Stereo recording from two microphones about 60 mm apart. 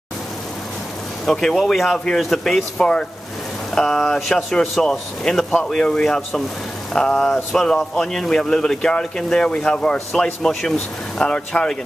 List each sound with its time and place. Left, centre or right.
1.2 s speech: centre
6.9 s a sound: centre
7.5 s speech: centre